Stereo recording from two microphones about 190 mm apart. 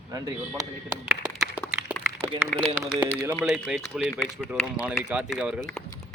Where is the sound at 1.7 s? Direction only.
10° right (ahead or behind).